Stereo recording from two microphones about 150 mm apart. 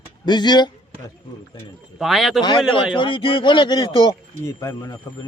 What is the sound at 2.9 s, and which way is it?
Speech, 35° left (ahead or behind).